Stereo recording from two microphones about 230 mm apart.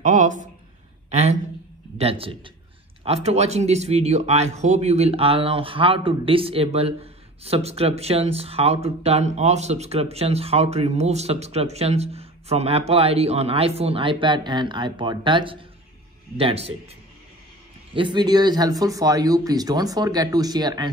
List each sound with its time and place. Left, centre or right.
0.0 s a sound: right
2.0 s speech: right
17.9 s speech: centre